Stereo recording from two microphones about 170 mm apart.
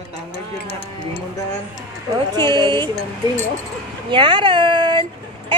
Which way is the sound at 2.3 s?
25° right (ahead or behind).